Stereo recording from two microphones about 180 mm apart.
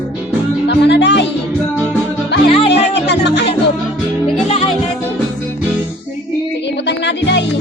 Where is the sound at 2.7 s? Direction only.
70° left (ahead or behind).